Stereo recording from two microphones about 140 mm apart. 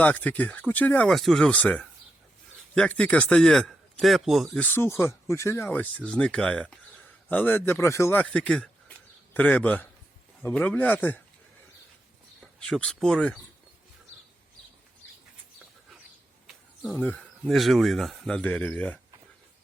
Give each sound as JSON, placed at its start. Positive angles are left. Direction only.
{"t": 0.0, "sound": "a man's voice", "side_deg": 10}
{"t": 12.4, "sound": "speech", "side_deg": 5}
{"t": 17.0, "sound": "speech", "side_deg": 10}